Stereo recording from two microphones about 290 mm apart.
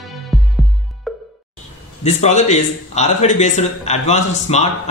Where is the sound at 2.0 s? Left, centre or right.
Left.